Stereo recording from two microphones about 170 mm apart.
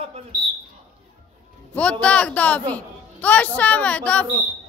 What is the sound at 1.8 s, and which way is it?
A man's voice, 10° left (ahead or behind).